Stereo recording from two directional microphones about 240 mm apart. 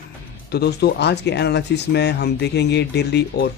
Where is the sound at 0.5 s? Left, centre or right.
Left.